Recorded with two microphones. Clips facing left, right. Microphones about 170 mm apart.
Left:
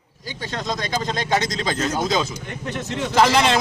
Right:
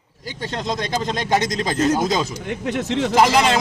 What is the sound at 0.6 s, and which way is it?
Speech, 20° right (ahead or behind).